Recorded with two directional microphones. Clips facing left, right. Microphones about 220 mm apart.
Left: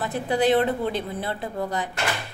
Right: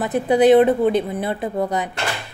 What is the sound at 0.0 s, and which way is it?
A woman's voice, 20° right (ahead or behind).